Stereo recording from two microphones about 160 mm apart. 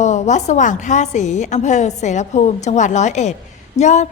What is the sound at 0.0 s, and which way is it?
A woman's voice, 45° left (ahead or behind).